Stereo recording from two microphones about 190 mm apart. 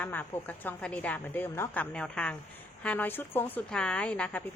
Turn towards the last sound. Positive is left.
turn(degrees=5)  # may be behind; listen again after turning